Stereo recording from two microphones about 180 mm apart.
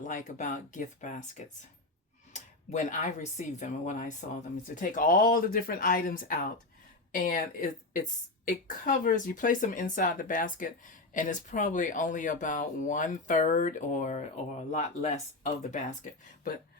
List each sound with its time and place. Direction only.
0.0 s speech: 45° left (ahead or behind)